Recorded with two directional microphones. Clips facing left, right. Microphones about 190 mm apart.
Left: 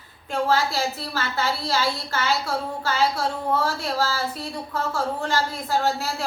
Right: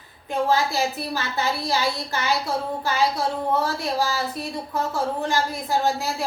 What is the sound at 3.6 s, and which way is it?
Speech, 15° right (ahead or behind).